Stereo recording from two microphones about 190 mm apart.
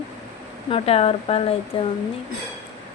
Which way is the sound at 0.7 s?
30° left (ahead or behind).